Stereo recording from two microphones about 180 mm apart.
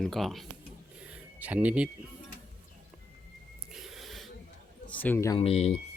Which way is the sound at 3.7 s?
Centre (ahead or behind).